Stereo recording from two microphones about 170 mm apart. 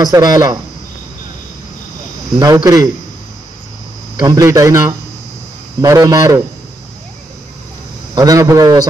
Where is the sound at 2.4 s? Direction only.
20° right (ahead or behind).